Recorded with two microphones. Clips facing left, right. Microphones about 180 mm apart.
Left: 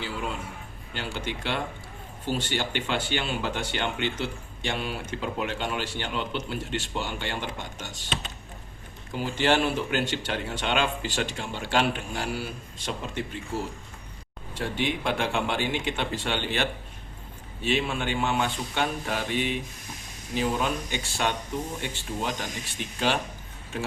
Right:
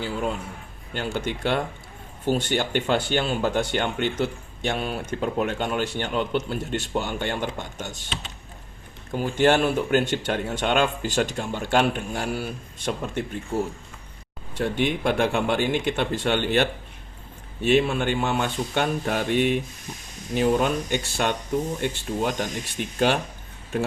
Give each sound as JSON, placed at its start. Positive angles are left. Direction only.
{"t": 0.9, "sound": "speech", "side_deg": -50}
{"t": 9.1, "sound": "speech", "side_deg": -50}
{"t": 14.6, "sound": "speech", "side_deg": -50}